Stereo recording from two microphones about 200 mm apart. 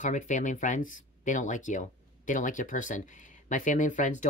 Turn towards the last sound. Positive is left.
turn(degrees=40)  # may be behind; listen again after turning